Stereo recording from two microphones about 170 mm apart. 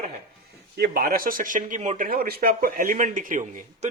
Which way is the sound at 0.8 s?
60° right (ahead or behind).